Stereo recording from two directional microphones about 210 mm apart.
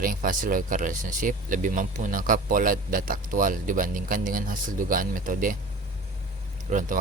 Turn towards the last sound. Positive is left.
turn(degrees=-40)  # may be behind; listen again after turning